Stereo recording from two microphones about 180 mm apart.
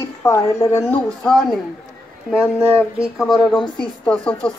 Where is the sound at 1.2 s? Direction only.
Centre (ahead or behind).